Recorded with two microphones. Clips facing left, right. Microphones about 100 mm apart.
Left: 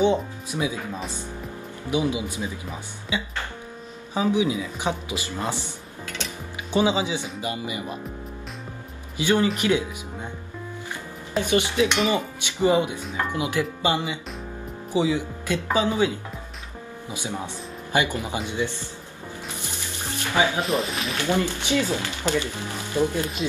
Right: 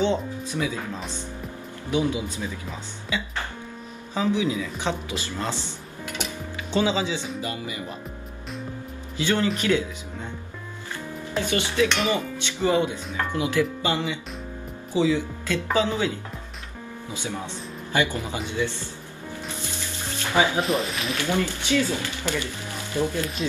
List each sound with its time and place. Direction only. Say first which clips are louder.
0.0 s speech: left 3 dB; 15° left (ahead or behind)
6.7 s speech: left 2 dB; 15° left (ahead or behind)
9.1 s speech: left 2 dB; 15° left (ahead or behind)
11.3 s speech: left 2 dB; 20° left (ahead or behind)
17.1 s speech: left 1 dB; 15° left (ahead or behind)
20.6 s speech: even; centre (ahead or behind)
21.2 s speech: left 2 dB; 20° left (ahead or behind)